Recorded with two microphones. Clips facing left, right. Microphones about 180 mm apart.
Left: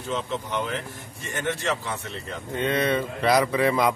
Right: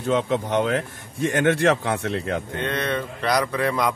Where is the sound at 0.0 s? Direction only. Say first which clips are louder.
Right 7 dB; 60° right (ahead or behind).